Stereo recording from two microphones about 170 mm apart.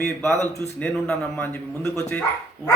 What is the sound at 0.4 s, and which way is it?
Speech, 15° left (ahead or behind).